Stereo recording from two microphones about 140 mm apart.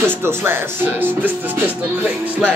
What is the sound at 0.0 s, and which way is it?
Speech, 15° right (ahead or behind).